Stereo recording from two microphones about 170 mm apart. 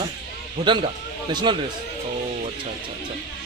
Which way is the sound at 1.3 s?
25° right (ahead or behind).